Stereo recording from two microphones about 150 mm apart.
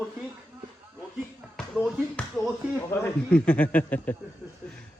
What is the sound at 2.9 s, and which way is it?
A man's voice, 15° left (ahead or behind).